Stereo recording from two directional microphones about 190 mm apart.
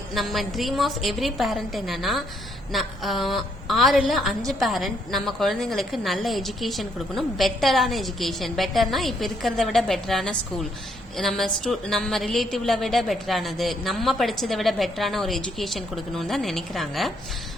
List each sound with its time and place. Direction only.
0.1 s a woman's voice: centre (ahead or behind)